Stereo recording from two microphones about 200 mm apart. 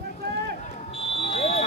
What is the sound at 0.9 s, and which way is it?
Smoke detector, 30° left (ahead or behind).